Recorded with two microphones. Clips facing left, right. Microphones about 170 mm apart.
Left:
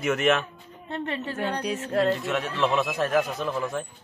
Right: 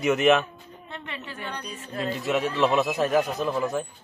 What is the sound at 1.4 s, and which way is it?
Speech, 70° left (ahead or behind).